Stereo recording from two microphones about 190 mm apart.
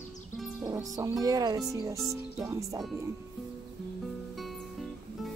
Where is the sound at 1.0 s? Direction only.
20° right (ahead or behind).